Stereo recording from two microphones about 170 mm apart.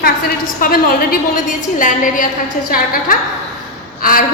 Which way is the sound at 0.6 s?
60° left (ahead or behind).